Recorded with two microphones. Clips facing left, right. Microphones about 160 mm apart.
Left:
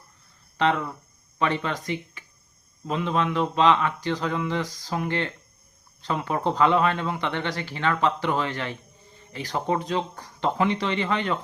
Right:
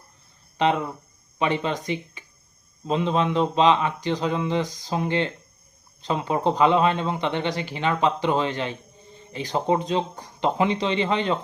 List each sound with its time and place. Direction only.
0.5 s speech: 20° right (ahead or behind)